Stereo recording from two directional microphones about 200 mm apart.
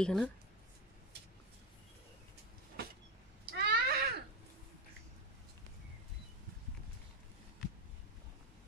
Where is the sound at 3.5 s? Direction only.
50° right (ahead or behind).